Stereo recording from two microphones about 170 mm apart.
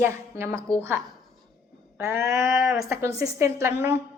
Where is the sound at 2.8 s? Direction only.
15° right (ahead or behind).